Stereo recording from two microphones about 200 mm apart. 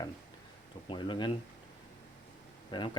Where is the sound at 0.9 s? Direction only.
25° left (ahead or behind).